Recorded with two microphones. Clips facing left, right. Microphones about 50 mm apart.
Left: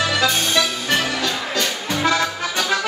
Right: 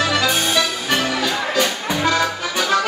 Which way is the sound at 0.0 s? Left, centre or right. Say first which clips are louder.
Right 1 dB; centre.